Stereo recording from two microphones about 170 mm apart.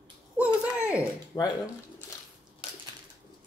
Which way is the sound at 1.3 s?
20° left (ahead or behind).